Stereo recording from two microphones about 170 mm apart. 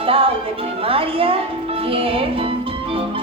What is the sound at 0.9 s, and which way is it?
Speech, 35° right (ahead or behind).